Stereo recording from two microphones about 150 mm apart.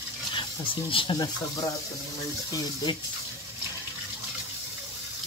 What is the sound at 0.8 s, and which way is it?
Speech, 35° left (ahead or behind).